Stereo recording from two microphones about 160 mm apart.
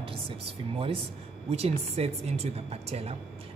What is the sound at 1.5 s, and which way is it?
Speech, 40° right (ahead or behind).